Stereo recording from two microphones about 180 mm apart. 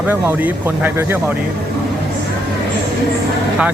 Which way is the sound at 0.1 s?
10° right (ahead or behind).